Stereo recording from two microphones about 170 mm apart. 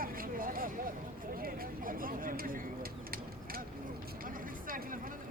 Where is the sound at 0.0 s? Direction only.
55° right (ahead or behind).